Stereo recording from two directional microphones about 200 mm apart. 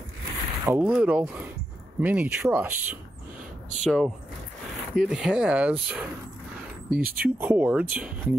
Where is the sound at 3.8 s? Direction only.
5° left (ahead or behind).